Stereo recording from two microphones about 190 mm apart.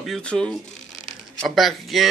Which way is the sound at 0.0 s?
5° left (ahead or behind).